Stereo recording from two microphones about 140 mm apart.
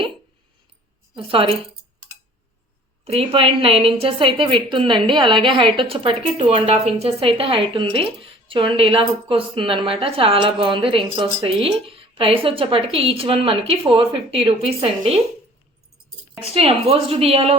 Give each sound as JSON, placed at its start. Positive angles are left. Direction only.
{"t": 1.1, "sound": "a woman's voice", "side_deg": -40}
{"t": 3.0, "sound": "a woman's voice", "side_deg": -45}
{"t": 16.5, "sound": "a woman's voice", "side_deg": -45}